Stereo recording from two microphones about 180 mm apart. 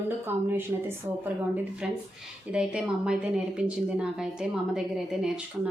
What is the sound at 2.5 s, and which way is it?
A woman's voice, 5° right (ahead or behind).